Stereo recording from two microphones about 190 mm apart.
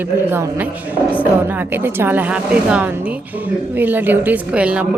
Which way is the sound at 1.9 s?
10° right (ahead or behind).